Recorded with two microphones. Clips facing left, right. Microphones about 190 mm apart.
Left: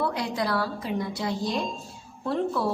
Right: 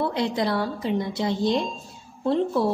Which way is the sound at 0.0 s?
25° right (ahead or behind).